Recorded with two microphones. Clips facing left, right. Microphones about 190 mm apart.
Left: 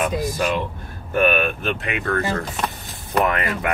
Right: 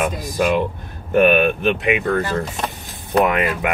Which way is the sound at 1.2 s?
20° right (ahead or behind).